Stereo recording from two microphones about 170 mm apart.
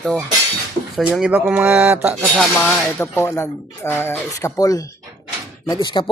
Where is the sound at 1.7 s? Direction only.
10° right (ahead or behind).